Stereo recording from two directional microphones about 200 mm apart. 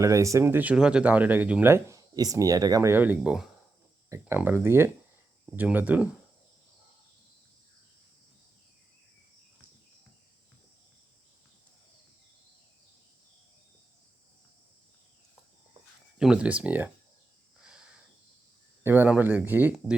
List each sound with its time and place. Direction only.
0.0 s speech: 15° right (ahead or behind)
16.1 s speech: 5° right (ahead or behind)
17.6 s a sound: 5° right (ahead or behind)
18.8 s speech: 10° right (ahead or behind)